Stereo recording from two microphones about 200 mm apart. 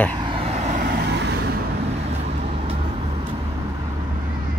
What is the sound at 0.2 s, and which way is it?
Vehicle, 25° right (ahead or behind).